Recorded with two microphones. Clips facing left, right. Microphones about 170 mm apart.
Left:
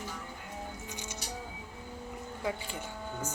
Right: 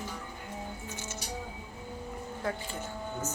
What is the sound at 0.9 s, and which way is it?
Music, 15° left (ahead or behind).